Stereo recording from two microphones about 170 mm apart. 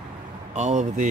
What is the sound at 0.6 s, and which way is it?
Speech, 45° right (ahead or behind).